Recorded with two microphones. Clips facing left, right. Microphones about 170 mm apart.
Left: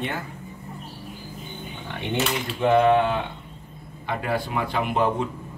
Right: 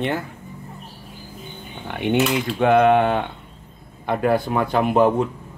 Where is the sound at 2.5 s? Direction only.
65° right (ahead or behind).